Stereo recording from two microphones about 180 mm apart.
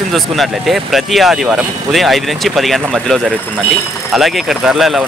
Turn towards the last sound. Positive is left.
turn(degrees=0)  # may be behind; listen again after turning